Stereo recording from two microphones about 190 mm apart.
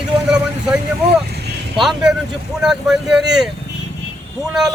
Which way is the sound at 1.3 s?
60° right (ahead or behind).